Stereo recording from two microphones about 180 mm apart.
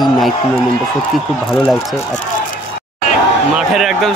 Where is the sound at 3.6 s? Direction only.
Centre (ahead or behind).